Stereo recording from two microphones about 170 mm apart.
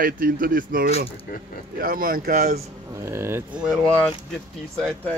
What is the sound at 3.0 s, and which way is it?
Speech, 15° right (ahead or behind).